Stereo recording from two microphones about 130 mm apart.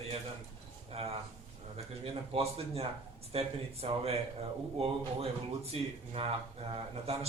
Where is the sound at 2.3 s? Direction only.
50° right (ahead or behind).